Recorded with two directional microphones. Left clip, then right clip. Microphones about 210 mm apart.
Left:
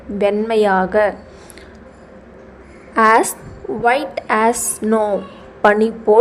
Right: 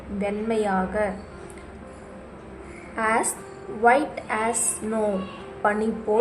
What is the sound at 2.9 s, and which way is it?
A woman's voice, 45° left (ahead or behind).